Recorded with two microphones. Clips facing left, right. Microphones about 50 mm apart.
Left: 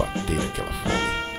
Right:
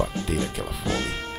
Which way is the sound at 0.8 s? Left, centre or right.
Left.